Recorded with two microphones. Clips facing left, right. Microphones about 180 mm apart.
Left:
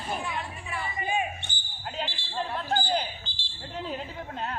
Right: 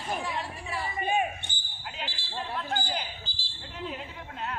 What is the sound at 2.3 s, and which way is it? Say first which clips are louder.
A woman's voice: left 4 dB; 35° left (ahead or behind).